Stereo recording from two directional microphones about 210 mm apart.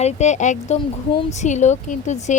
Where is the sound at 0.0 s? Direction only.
35° left (ahead or behind).